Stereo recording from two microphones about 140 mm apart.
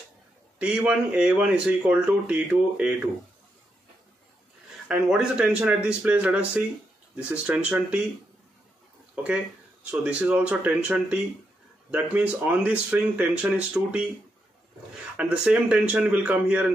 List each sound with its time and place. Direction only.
0.6 s speech: 10° right (ahead or behind)
4.8 s speech: 5° right (ahead or behind)
9.1 s speech: 10° right (ahead or behind)
15.1 s speech: 10° right (ahead or behind)